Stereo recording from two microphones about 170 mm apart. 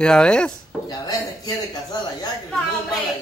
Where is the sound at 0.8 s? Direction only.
20° left (ahead or behind).